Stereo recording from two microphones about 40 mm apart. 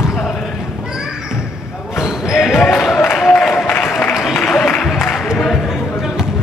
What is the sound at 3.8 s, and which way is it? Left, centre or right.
Applause, left.